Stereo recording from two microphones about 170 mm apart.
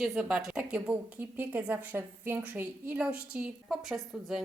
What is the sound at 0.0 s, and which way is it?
A woman's voice, 5° right (ahead or behind).